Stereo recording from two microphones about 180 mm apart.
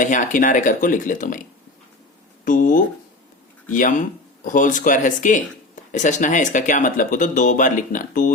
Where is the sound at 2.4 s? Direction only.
45° left (ahead or behind).